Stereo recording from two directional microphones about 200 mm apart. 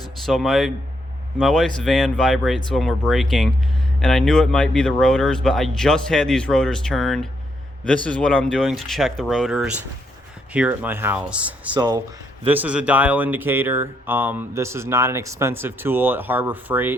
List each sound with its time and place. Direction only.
0.3 s speech: centre (ahead or behind)
11.7 s speech: 20° right (ahead or behind)
12.5 s speech: 10° right (ahead or behind)